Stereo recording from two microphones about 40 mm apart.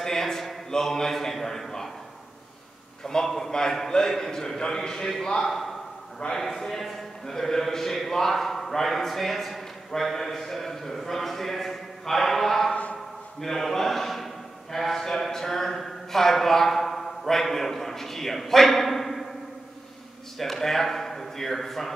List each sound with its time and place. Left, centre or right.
0.0 s a sound: centre
0.7 s a man's voice: centre
3.1 s a man's voice: centre
6.1 s a man's voice: centre
20.3 s a man's voice: centre